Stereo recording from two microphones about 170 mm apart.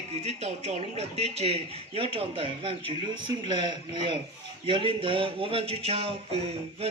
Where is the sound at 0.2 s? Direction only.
40° right (ahead or behind).